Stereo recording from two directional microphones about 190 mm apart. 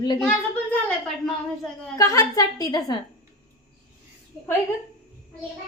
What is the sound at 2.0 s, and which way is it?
A woman's voice, 20° left (ahead or behind).